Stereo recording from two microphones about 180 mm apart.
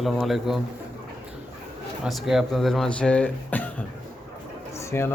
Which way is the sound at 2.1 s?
Centre (ahead or behind).